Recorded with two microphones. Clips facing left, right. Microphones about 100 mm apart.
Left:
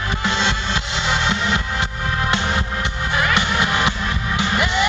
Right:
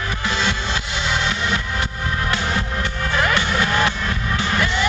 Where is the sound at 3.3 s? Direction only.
15° left (ahead or behind).